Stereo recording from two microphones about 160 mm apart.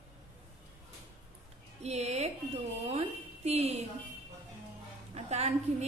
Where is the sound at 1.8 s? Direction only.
45° right (ahead or behind).